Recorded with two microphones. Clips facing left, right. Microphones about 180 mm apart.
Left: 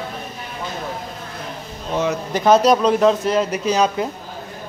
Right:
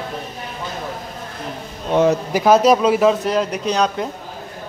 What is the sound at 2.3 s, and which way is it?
Speech, 5° right (ahead or behind).